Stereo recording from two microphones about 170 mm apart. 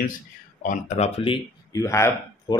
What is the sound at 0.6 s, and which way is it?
Speech, 45° left (ahead or behind).